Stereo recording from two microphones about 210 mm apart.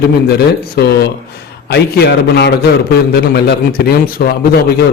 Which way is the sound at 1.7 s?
50° left (ahead or behind).